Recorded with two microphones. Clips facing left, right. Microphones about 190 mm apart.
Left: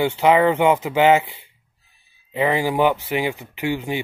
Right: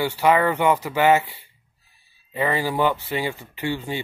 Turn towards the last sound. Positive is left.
turn(degrees=15)  # may be behind; listen again after turning